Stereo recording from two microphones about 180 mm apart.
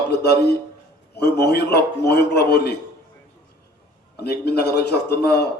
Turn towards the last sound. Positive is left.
turn(degrees=65)  # may be behind; listen again after turning